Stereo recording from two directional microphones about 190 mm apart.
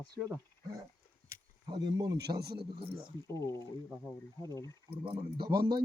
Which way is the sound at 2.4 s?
55° right (ahead or behind).